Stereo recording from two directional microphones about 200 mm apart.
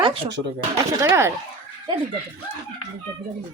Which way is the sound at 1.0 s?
15° right (ahead or behind).